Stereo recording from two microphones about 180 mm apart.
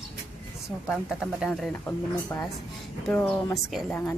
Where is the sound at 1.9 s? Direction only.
10° left (ahead or behind).